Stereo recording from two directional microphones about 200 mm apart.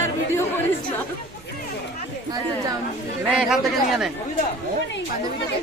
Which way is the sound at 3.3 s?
5° right (ahead or behind).